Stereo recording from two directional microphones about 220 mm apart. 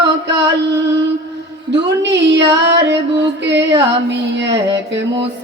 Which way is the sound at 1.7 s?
55° right (ahead or behind).